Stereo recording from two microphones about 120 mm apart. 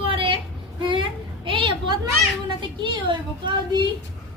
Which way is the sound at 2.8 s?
40° right (ahead or behind).